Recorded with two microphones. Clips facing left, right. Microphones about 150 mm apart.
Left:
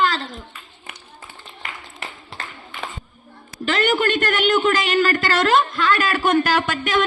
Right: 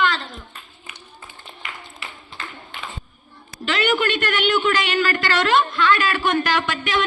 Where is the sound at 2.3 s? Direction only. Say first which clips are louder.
Even; 85° left.